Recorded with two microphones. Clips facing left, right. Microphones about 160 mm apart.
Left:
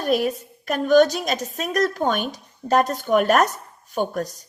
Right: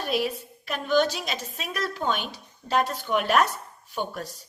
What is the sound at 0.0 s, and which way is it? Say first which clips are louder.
A woman's voice: left 6 dB; 45° left (ahead or behind).